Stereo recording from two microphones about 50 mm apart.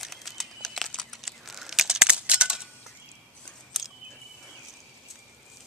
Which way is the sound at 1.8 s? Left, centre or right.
Centre.